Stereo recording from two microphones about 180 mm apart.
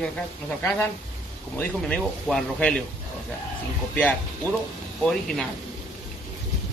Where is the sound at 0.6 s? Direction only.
15° left (ahead or behind).